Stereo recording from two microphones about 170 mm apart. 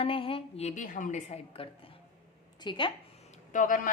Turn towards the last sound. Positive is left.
turn(degrees=55)  # may be behind; listen again after turning